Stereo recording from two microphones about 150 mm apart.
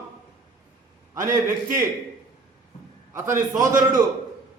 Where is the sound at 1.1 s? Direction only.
20° right (ahead or behind).